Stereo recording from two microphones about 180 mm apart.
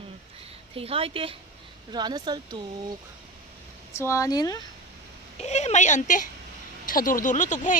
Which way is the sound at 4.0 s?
15° left (ahead or behind).